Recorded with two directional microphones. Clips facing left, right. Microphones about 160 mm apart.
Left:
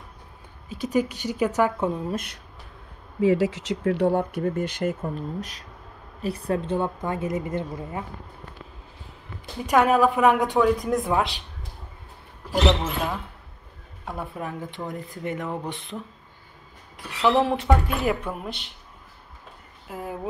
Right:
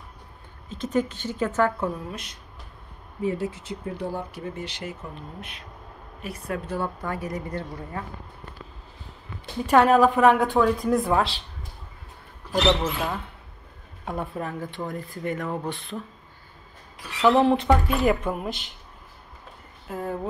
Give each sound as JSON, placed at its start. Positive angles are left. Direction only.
{"t": 0.7, "sound": "a woman's voice", "side_deg": 10}
{"t": 3.2, "sound": "speech", "side_deg": 90}
{"t": 5.4, "sound": "a woman's voice", "side_deg": 40}
{"t": 9.7, "sound": "a woman's voice", "side_deg": 10}
{"t": 12.5, "sound": "a woman's voice", "side_deg": 20}
{"t": 14.0, "sound": "a woman's voice", "side_deg": 0}
{"t": 14.4, "sound": "a woman's voice", "side_deg": 20}
{"t": 17.3, "sound": "a woman's voice", "side_deg": 10}
{"t": 19.9, "sound": "a woman's voice", "side_deg": 10}